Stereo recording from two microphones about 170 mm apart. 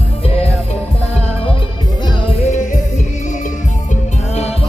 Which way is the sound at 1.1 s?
35° left (ahead or behind).